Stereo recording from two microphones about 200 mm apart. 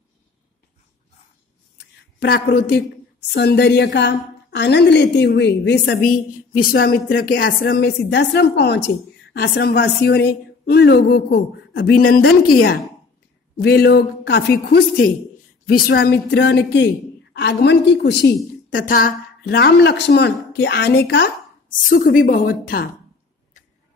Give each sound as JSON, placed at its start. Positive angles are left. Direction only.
{"t": 2.1, "sound": "a woman's voice", "side_deg": 50}
{"t": 21.8, "sound": "a woman's voice", "side_deg": 45}